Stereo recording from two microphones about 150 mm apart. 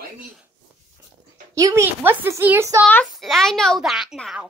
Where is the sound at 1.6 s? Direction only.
20° right (ahead or behind).